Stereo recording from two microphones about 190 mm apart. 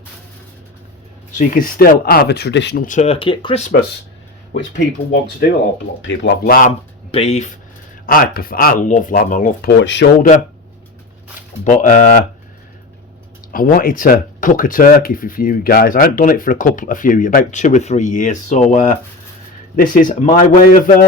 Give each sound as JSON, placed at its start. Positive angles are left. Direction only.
{"t": 1.4, "sound": "speech", "side_deg": 45}
{"t": 2.8, "sound": "speech", "side_deg": 40}
{"t": 3.6, "sound": "speech", "side_deg": 50}
{"t": 6.0, "sound": "speech", "side_deg": 75}
{"t": 6.4, "sound": "speech", "side_deg": 45}
{"t": 7.1, "sound": "speech", "side_deg": 35}
{"t": 8.0, "sound": "speech", "side_deg": 50}
{"t": 9.8, "sound": "speech", "side_deg": 70}
{"t": 11.3, "sound": "speech", "side_deg": 40}
{"t": 13.5, "sound": "speech", "side_deg": 50}